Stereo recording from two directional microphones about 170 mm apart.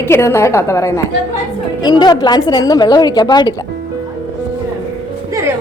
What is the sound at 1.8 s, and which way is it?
A woman's voice, 25° left (ahead or behind).